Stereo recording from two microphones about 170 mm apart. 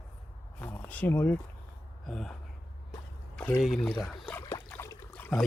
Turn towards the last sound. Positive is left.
turn(degrees=15)  # may be behind; listen again after turning